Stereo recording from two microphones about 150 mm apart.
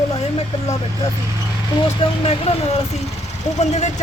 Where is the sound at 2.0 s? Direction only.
40° left (ahead or behind).